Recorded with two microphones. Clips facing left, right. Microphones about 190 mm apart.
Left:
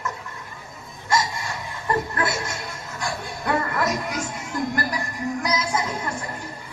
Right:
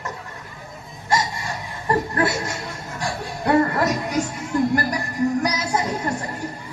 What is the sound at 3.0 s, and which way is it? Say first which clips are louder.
Music: right 4 dB; 35° right (ahead or behind).